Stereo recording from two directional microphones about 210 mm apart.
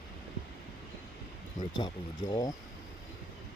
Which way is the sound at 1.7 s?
20° left (ahead or behind).